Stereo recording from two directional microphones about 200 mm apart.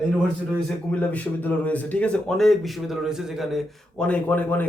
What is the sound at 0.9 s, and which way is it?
A man's voice, 5° left (ahead or behind).